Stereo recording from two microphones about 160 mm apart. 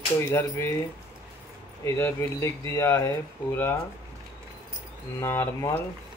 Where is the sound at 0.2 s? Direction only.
15° left (ahead or behind).